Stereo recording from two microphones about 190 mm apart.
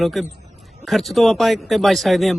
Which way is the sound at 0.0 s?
Centre (ahead or behind).